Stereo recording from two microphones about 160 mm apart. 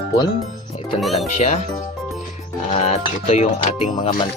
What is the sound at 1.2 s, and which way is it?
Speech, 45° left (ahead or behind).